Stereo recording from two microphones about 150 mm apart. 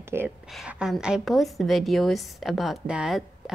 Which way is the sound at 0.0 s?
15° right (ahead or behind).